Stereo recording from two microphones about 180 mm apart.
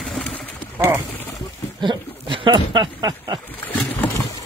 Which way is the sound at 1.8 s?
25° right (ahead or behind).